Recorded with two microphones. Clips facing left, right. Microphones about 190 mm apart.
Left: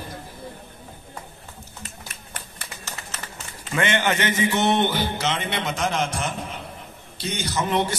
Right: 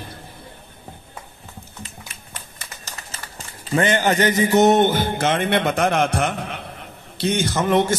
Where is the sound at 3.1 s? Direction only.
35° right (ahead or behind).